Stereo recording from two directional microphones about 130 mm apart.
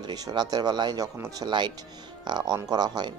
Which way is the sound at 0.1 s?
30° right (ahead or behind).